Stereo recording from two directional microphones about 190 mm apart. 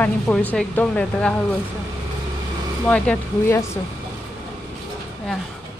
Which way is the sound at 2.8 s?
5° left (ahead or behind).